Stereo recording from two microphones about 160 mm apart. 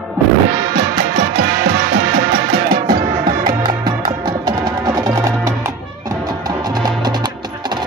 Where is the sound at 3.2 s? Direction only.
25° right (ahead or behind).